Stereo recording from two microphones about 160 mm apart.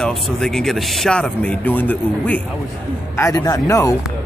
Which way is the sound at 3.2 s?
20° left (ahead or behind).